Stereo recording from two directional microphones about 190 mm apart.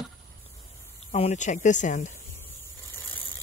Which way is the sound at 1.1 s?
35° left (ahead or behind).